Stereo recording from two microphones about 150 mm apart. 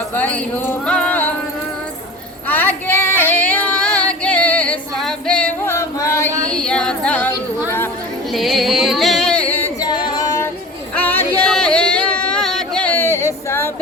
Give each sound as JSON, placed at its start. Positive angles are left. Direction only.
{"t": 0.1, "sound": "speech", "side_deg": 10}
{"t": 2.5, "sound": "female singing", "side_deg": 15}
{"t": 6.5, "sound": "singing", "side_deg": 5}
{"t": 8.3, "sound": "a sound", "side_deg": 0}
{"t": 9.8, "sound": "singing", "side_deg": 30}
{"t": 10.9, "sound": "a sound", "side_deg": 10}